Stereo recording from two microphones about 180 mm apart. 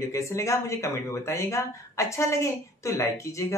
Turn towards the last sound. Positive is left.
turn(degrees=15)  # may be behind; listen again after turning